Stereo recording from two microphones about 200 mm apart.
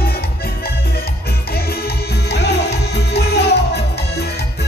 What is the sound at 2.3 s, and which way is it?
Music, 55° left (ahead or behind).